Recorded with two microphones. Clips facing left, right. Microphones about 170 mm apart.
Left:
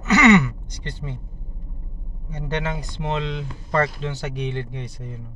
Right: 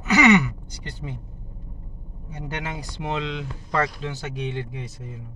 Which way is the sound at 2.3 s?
10° right (ahead or behind).